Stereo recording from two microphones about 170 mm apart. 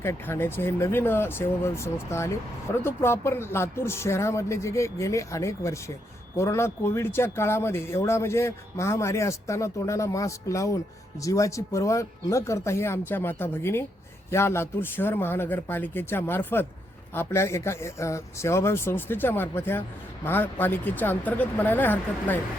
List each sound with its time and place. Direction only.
0.0 s speech: 15° left (ahead or behind)